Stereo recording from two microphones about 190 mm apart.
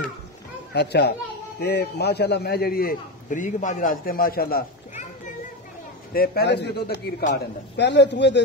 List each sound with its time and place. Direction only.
0.7 s a man's voice: 60° left (ahead or behind)
6.1 s a man's voice: 55° left (ahead or behind)